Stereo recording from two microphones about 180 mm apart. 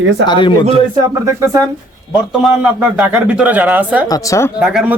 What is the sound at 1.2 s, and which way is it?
Speech, 15° right (ahead or behind).